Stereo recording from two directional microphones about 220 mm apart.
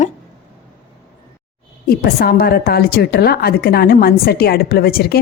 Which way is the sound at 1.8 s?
45° left (ahead or behind).